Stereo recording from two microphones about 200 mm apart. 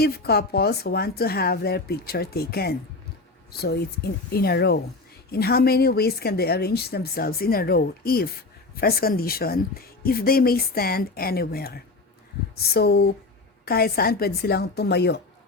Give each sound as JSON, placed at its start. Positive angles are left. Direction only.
{"t": 0.0, "sound": "a woman's voice", "side_deg": 50}